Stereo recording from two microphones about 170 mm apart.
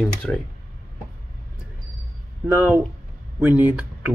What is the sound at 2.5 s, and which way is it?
Speech, 15° right (ahead or behind).